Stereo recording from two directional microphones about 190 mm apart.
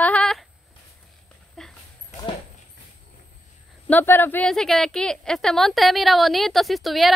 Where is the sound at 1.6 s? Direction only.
Centre (ahead or behind).